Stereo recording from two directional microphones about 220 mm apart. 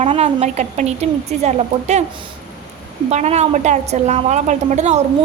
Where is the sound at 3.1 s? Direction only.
30° right (ahead or behind).